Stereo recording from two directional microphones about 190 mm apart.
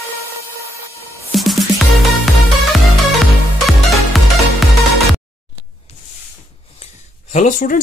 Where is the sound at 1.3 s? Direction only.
Centre (ahead or behind).